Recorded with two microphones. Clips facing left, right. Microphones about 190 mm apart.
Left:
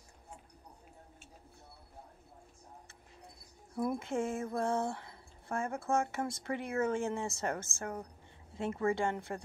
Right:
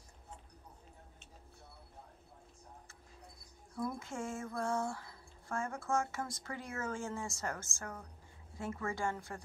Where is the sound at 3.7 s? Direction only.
20° left (ahead or behind).